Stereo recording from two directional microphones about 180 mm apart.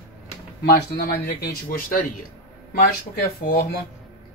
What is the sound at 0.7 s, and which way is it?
Speech, 60° left (ahead or behind).